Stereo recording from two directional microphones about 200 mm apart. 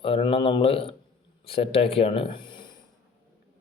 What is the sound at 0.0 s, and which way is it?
Speech, 25° left (ahead or behind).